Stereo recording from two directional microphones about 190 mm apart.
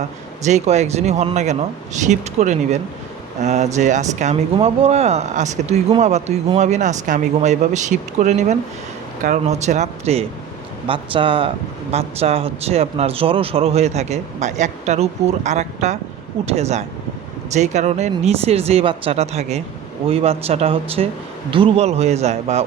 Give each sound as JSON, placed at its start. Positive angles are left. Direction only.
{"t": 0.4, "sound": "speech", "side_deg": -35}